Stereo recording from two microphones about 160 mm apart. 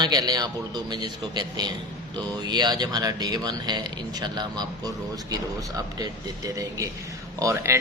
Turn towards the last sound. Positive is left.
turn(degrees=-20)  # may be behind; listen again after turning